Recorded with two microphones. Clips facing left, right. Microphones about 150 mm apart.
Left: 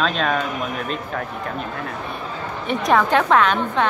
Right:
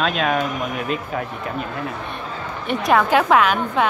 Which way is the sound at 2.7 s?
Centre (ahead or behind).